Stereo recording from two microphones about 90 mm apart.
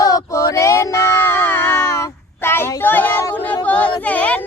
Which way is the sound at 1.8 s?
40° left (ahead or behind).